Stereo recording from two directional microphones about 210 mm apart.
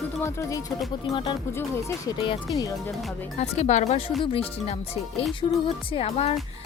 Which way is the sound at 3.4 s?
35° left (ahead or behind).